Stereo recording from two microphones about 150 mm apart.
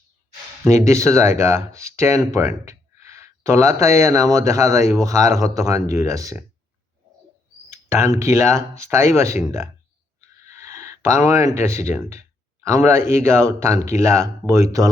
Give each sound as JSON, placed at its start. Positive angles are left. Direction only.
{"t": 0.6, "sound": "speech", "side_deg": -20}
{"t": 7.9, "sound": "speech", "side_deg": -20}
{"t": 10.2, "sound": "a sound", "side_deg": -20}
{"t": 12.6, "sound": "speech", "side_deg": -20}